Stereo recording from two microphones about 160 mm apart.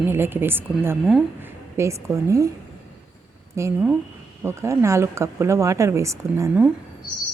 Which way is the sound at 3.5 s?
20° right (ahead or behind).